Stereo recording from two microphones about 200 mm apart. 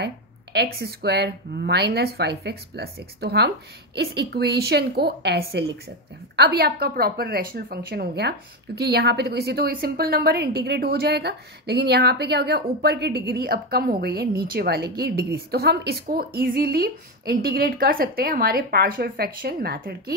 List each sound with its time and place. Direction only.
0.0 s a woman's voice: 55° right (ahead or behind)